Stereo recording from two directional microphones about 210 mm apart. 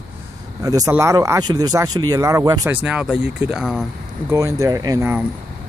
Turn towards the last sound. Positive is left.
turn(degrees=-10)  # may be behind; listen again after turning